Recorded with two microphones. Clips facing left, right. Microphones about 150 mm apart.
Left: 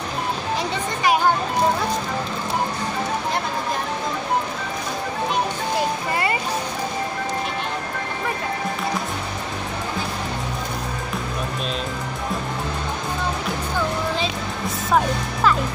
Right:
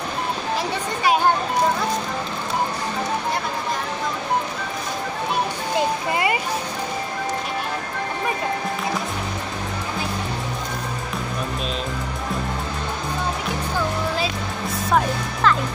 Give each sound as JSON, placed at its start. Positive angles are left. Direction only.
{"t": 5.8, "sound": "music", "side_deg": -20}
{"t": 14.9, "sound": "music", "side_deg": 5}